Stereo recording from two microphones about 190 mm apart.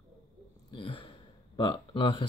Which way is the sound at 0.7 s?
25° left (ahead or behind).